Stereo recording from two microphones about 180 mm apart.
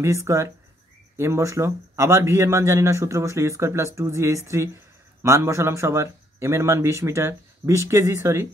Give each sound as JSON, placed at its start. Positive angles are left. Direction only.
{"t": 0.0, "sound": "speech", "side_deg": -15}